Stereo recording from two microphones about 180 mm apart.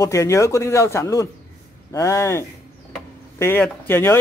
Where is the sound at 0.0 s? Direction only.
15° left (ahead or behind).